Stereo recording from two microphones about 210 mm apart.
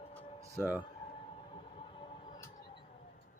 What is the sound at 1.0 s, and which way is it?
Train, 25° left (ahead or behind).